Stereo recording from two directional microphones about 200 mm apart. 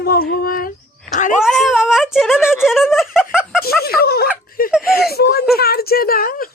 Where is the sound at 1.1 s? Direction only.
40° left (ahead or behind).